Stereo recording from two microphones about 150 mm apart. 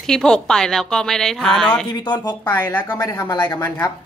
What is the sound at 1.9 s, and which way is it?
Speech, 30° left (ahead or behind).